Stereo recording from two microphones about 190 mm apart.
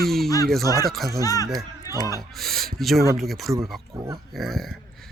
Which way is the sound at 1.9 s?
20° left (ahead or behind).